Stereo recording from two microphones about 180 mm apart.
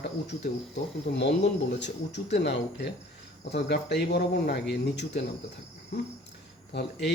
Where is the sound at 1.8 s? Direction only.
70° left (ahead or behind).